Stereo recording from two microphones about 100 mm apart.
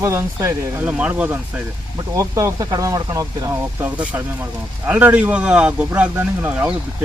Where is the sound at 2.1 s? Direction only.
35° right (ahead or behind).